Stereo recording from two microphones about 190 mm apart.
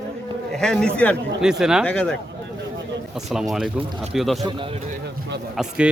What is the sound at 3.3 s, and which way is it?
A man's voice, centre (ahead or behind).